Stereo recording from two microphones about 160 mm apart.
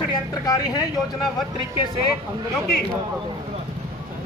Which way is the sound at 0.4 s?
20° left (ahead or behind).